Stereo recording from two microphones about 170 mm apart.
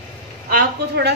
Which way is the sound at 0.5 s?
75° right (ahead or behind).